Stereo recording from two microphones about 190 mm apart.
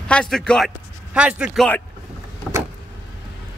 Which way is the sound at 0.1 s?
5° left (ahead or behind).